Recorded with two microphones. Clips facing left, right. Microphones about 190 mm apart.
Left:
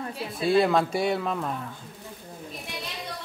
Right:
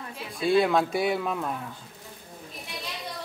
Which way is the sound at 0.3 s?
Centre (ahead or behind).